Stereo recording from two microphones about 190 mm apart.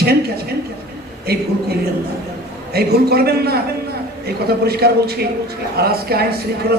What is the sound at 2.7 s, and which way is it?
A man's voice, 55° right (ahead or behind).